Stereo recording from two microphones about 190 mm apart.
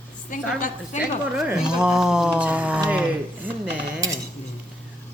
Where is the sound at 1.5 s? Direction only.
5° right (ahead or behind).